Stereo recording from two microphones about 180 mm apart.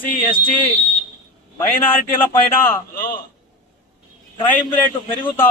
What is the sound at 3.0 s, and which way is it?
Speech, 55° left (ahead or behind).